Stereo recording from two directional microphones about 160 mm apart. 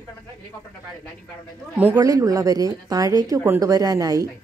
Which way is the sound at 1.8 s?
15° right (ahead or behind).